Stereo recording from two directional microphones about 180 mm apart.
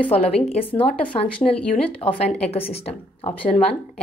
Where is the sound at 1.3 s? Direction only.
5° left (ahead or behind).